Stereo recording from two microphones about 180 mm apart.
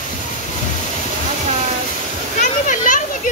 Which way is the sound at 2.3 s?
45° left (ahead or behind).